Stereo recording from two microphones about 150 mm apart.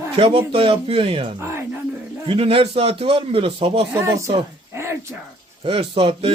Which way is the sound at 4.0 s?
20° right (ahead or behind).